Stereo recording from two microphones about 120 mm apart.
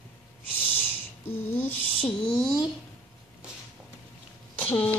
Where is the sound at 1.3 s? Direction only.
20° left (ahead or behind).